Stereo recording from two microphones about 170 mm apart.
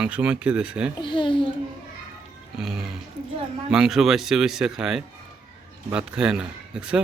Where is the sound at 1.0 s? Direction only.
30° left (ahead or behind).